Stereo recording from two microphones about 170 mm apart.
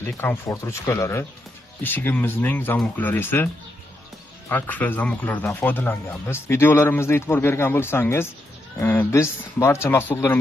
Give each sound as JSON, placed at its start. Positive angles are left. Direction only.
{"t": 0.0, "sound": "speech", "side_deg": 15}
{"t": 4.5, "sound": "speech", "side_deg": 10}